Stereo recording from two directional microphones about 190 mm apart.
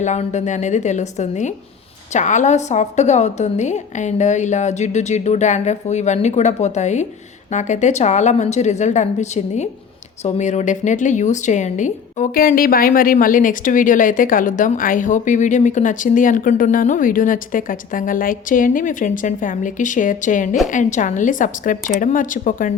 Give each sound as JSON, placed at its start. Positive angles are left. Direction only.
{"t": 0.0, "sound": "a woman's voice", "side_deg": 40}